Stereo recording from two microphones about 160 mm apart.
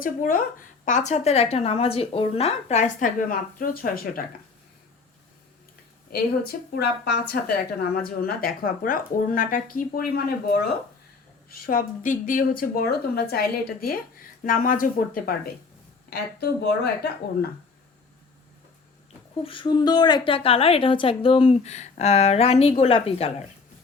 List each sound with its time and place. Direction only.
0.0 s a woman's voice: 60° left (ahead or behind)
6.1 s a woman's voice: 75° left (ahead or behind)
11.5 s speech: 65° left (ahead or behind)
16.0 s a woman's voice: 85° left
19.4 s a woman's voice: 35° left (ahead or behind)